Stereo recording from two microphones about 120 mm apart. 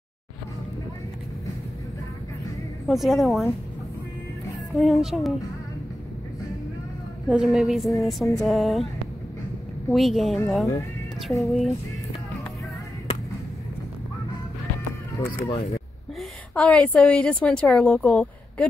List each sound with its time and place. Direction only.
2.9 s a woman's voice: centre (ahead or behind)
4.7 s a woman's voice: centre (ahead or behind)
7.2 s a woman's voice: 5° right (ahead or behind)
9.8 s a woman's voice: centre (ahead or behind)
15.1 s speech: 25° left (ahead or behind)
15.5 s speech: 60° left (ahead or behind)
16.2 s a woman's voice: 10° left (ahead or behind)